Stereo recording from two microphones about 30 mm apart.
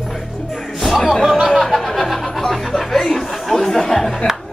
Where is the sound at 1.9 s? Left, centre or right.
Centre.